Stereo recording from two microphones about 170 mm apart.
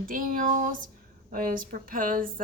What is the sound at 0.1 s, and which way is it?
A woman's voice, 55° right (ahead or behind).